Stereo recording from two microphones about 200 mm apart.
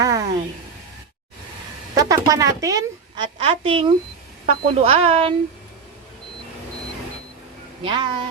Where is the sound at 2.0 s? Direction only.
15° right (ahead or behind).